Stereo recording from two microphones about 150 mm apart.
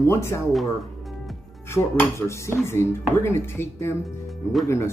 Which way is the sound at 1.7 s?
15° left (ahead or behind).